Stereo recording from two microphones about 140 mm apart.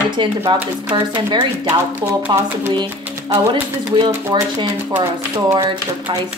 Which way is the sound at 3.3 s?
40° right (ahead or behind).